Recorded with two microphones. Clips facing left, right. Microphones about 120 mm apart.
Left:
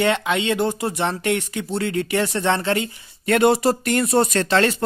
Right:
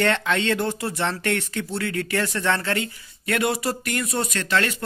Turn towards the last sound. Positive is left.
turn(degrees=30)  # may be behind; listen again after turning